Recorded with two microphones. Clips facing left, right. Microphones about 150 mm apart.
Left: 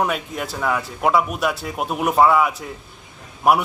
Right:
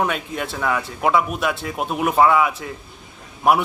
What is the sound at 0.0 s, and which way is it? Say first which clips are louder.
A man's voice: even; centre (ahead or behind).